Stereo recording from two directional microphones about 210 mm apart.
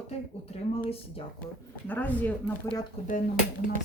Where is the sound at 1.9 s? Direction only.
10° left (ahead or behind).